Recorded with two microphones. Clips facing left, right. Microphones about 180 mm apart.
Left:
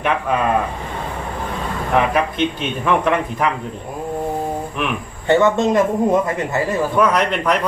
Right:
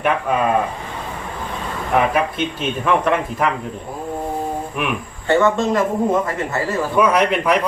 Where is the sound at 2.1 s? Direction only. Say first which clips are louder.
Left 1 dB; 5° right (ahead or behind).